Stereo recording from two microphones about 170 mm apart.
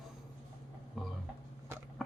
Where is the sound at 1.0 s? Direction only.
Centre (ahead or behind).